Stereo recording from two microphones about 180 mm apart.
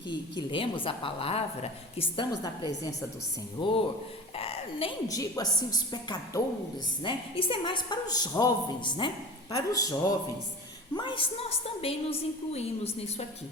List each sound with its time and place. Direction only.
0.1 s a woman's voice: 25° left (ahead or behind)
5.0 s a woman's voice: 20° left (ahead or behind); by 13.2 s 35° left (ahead or behind)